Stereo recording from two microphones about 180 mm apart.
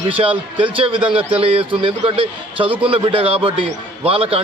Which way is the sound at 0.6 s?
30° right (ahead or behind).